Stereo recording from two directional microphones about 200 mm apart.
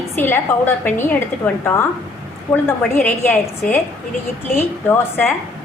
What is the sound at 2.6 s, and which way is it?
Speech, 10° left (ahead or behind).